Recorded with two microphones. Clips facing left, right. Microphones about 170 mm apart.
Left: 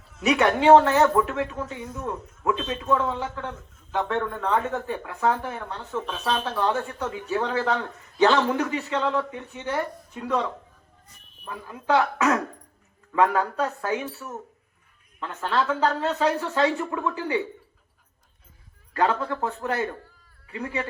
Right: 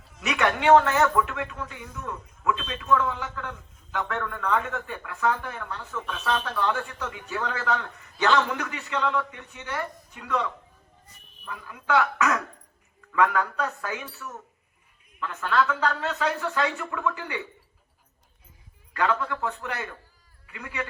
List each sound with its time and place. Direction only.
0.2 s speech: 30° left (ahead or behind)
18.9 s speech: 30° left (ahead or behind)